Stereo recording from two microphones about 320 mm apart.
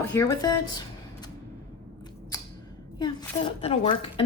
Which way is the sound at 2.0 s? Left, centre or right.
Centre.